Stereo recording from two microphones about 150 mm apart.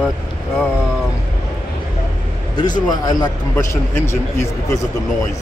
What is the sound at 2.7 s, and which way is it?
A man's voice, 25° left (ahead or behind).